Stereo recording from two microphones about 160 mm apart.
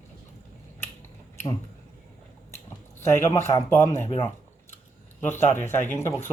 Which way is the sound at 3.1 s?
15° left (ahead or behind).